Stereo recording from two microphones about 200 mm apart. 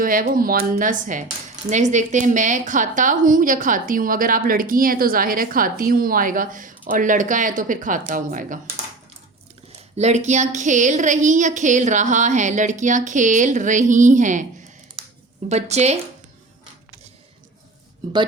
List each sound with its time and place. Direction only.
0.0 s a woman's voice: 45° right (ahead or behind)
10.0 s a woman's voice: 35° right (ahead or behind)
15.4 s a woman's voice: 35° right (ahead or behind)
18.0 s speech: 20° right (ahead or behind)